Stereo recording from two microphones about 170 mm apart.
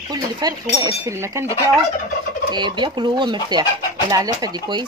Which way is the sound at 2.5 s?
25° right (ahead or behind).